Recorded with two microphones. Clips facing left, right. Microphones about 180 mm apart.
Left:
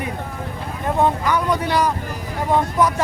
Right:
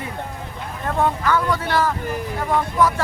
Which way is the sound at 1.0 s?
15° left (ahead or behind).